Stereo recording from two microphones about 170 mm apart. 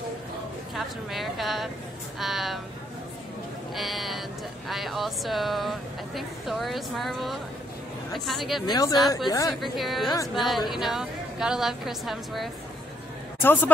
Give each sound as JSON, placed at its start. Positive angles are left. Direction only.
{"t": 0.7, "sound": "speech", "side_deg": 0}
{"t": 3.7, "sound": "speech", "side_deg": 0}
{"t": 8.6, "sound": "speech", "side_deg": 25}
{"t": 9.6, "sound": "speech", "side_deg": 0}
{"t": 13.4, "sound": "a woman's voice", "side_deg": 10}